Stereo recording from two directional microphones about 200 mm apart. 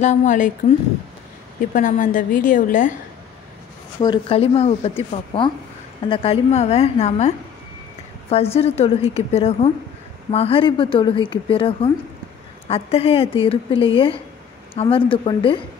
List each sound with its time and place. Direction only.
0.0 s a woman's voice: 35° left (ahead or behind)
4.0 s a woman's voice: 25° left (ahead or behind)